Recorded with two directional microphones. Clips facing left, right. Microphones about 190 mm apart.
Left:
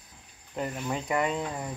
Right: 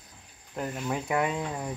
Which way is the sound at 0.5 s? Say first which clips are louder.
Even; centre (ahead or behind).